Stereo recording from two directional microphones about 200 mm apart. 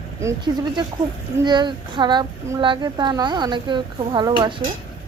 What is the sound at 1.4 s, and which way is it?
Speech, 20° right (ahead or behind).